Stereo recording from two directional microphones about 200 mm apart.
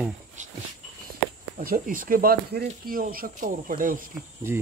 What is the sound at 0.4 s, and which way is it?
Dog, 40° right (ahead or behind).